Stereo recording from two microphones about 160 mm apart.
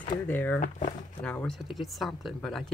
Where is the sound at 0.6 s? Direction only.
50° left (ahead or behind).